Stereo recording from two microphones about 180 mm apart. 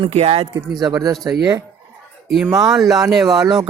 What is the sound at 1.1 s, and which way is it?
Speech, centre (ahead or behind).